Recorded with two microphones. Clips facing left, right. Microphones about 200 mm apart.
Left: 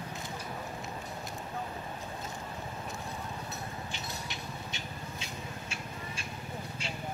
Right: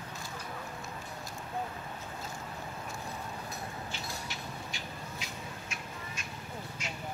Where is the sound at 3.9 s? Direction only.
20° left (ahead or behind).